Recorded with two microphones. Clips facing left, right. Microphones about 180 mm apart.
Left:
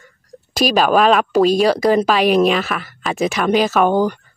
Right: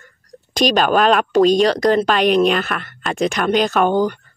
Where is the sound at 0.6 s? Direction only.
5° left (ahead or behind).